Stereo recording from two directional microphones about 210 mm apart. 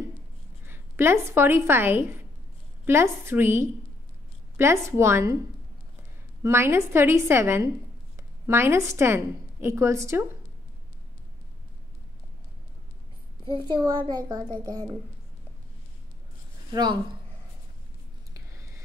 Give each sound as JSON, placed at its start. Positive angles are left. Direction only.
{"t": 0.7, "sound": "a woman's voice", "side_deg": -10}
{"t": 6.4, "sound": "a woman's voice", "side_deg": -10}
{"t": 13.5, "sound": "a child's voice", "side_deg": -20}
{"t": 18.3, "sound": "a sound", "side_deg": -15}